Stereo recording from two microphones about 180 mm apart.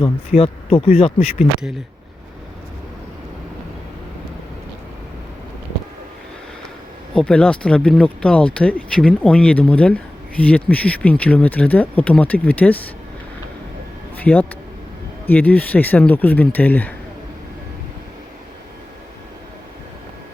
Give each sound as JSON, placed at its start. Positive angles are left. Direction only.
{"t": 0.3, "sound": "speech", "side_deg": 35}
{"t": 7.1, "sound": "speech", "side_deg": 5}
{"t": 14.2, "sound": "speech", "side_deg": 10}